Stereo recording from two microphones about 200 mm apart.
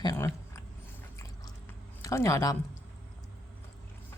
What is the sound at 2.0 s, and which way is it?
Speech, 15° left (ahead or behind).